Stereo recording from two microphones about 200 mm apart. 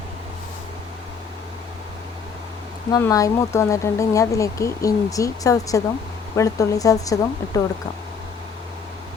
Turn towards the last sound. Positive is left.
turn(degrees=15)  # may be behind; listen again after turning